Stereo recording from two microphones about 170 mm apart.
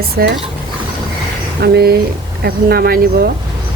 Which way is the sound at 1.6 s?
70° right (ahead or behind).